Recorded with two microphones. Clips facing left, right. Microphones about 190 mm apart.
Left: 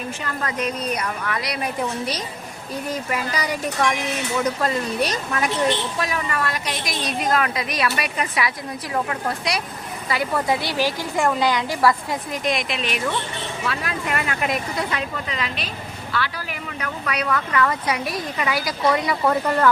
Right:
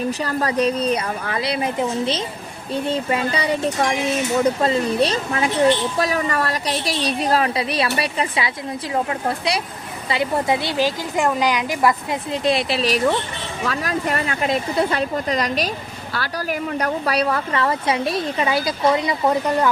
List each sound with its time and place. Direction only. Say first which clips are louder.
0.1 s a woman's voice: right 6 dB; 35° right (ahead or behind); by 12.4 s 20° right (ahead or behind)
12.5 s a woman's voice: right 5 dB; 35° right (ahead or behind); by 19.7 s 15° right (ahead or behind)